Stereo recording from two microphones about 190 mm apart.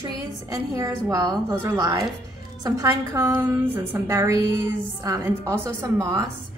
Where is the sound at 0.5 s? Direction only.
15° right (ahead or behind).